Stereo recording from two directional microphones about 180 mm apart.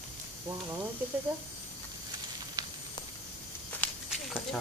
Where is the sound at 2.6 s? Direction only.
20° right (ahead or behind).